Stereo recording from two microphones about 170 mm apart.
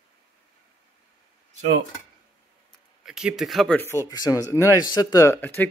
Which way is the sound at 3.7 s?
15° left (ahead or behind).